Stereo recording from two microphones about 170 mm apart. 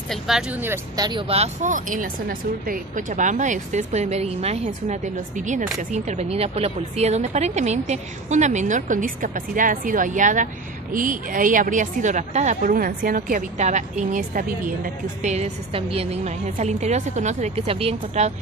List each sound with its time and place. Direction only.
0.1 s speech: 5° right (ahead or behind)
0.9 s speech: 25° right (ahead or behind); by 14.8 s 55° right (ahead or behind)
15.2 s a woman's voice: 40° right (ahead or behind)